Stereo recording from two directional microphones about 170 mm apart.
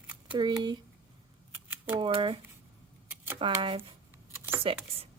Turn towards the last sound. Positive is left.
turn(degrees=-30)  # may be behind; listen again after turning